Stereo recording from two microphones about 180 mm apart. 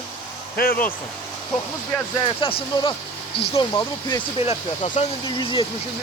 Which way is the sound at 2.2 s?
30° left (ahead or behind).